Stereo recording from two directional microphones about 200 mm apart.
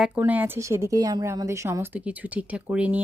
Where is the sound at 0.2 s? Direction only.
10° right (ahead or behind).